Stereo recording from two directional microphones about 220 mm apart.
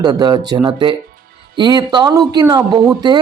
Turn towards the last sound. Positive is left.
turn(degrees=-20)  # may be behind; listen again after turning